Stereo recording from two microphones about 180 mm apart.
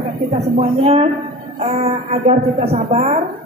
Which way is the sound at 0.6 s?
35° right (ahead or behind).